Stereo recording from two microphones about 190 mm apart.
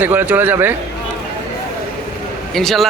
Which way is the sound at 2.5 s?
Centre (ahead or behind).